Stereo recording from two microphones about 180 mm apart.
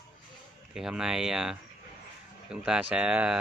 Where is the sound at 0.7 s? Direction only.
5° right (ahead or behind).